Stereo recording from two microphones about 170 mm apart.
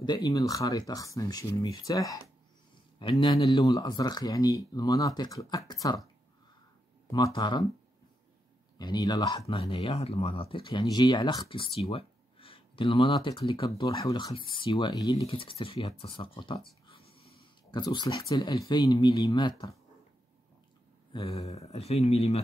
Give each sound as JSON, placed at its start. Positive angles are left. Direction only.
{"t": 0.0, "sound": "speech", "side_deg": 25}
{"t": 7.1, "sound": "speech", "side_deg": 20}
{"t": 8.7, "sound": "speech", "side_deg": 25}
{"t": 9.6, "sound": "speech", "side_deg": 35}
{"t": 15.2, "sound": "speech", "side_deg": 35}
{"t": 16.8, "sound": "a sound", "side_deg": 35}
{"t": 18.3, "sound": "speech", "side_deg": 25}
{"t": 21.1, "sound": "speech", "side_deg": 35}